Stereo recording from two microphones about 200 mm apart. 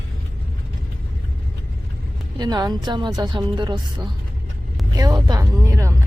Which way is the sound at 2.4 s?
20° right (ahead or behind).